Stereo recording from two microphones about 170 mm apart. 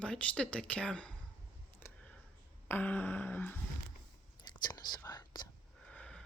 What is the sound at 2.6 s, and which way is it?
Speech, 10° left (ahead or behind).